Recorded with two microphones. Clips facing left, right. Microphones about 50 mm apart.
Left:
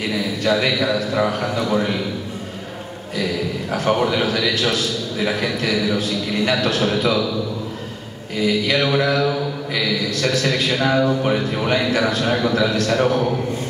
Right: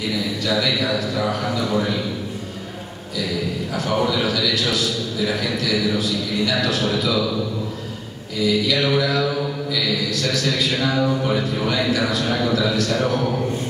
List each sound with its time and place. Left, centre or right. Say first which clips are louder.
0.4 s a man's voice: left 4 dB; left
3.7 s a man's voice: left 3 dB; left
8.4 s a man's voice: left 1 dB; left